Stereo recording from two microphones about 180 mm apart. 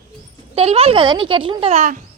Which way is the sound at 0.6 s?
35° right (ahead or behind).